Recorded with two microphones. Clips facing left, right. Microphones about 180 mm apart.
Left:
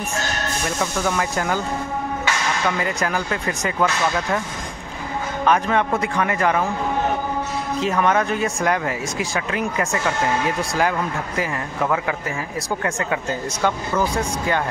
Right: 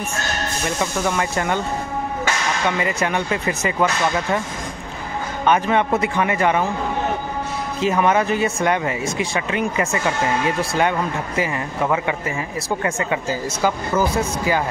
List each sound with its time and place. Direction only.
0.7 s speech: centre (ahead or behind)
2.8 s speech: centre (ahead or behind)
5.4 s speech: centre (ahead or behind)
7.8 s speech: 5° right (ahead or behind)